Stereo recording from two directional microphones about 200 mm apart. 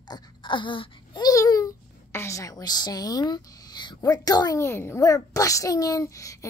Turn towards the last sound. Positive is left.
turn(degrees=15)  # may be behind; listen again after turning